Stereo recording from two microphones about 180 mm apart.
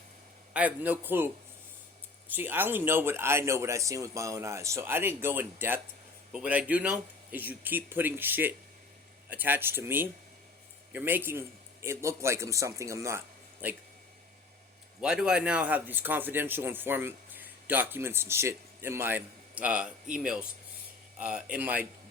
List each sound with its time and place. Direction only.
0.5 s a man's voice: 10° right (ahead or behind)
2.3 s a man's voice: 10° right (ahead or behind)
15.0 s a man's voice: 5° right (ahead or behind)